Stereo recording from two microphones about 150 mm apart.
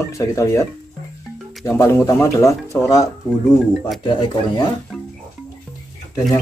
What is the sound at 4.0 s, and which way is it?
Speech, 35° left (ahead or behind).